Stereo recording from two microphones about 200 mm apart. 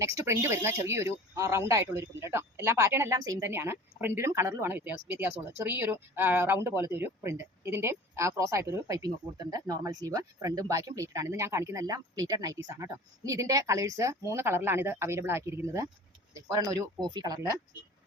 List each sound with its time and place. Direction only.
0.0 s speech: 15° right (ahead or behind)